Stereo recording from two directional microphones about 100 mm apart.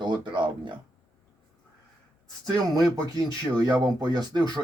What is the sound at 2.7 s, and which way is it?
Speech, 40° right (ahead or behind).